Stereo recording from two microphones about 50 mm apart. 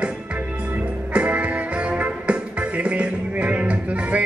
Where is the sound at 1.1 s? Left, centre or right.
Right.